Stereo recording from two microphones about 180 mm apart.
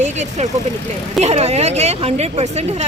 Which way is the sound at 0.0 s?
40° right (ahead or behind).